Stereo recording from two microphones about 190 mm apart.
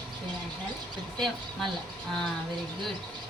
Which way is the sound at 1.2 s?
Centre (ahead or behind).